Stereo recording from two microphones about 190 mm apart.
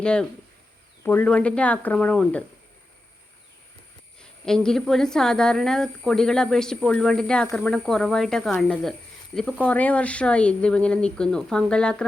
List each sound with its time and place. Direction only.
0.0 s a woman's voice: 5° left (ahead or behind)
4.2 s a woman's voice: 5° left (ahead or behind)